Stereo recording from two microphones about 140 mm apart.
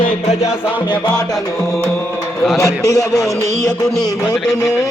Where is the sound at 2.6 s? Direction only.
25° left (ahead or behind).